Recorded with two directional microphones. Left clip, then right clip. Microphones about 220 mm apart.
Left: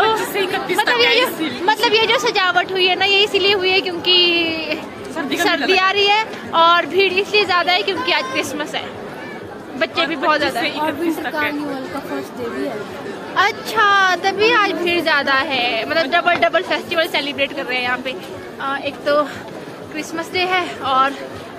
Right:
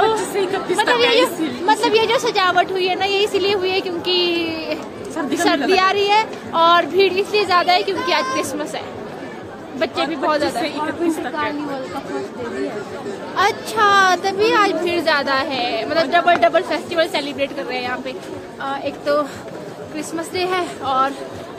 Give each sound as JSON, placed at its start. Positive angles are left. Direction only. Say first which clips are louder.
{"t": 0.3, "sound": "chatter", "louder": "even", "side_deg": -15}
{"t": 0.9, "sound": "a woman's voice", "louder": "even", "side_deg": 5}
{"t": 10.6, "sound": "a woman's voice", "louder": "left 2 dB", "side_deg": -15}
{"t": 13.4, "sound": "a woman's voice", "louder": "left 1 dB", "side_deg": 0}